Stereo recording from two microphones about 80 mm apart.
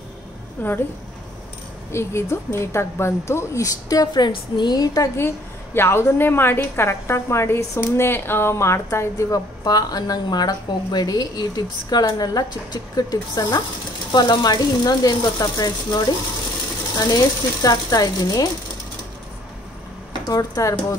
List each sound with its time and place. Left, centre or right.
0.6 s speech: left
1.9 s speech: left
5.8 s speech: left
9.3 s a woman's voice: left
17.0 s speech: left
20.2 s speech: left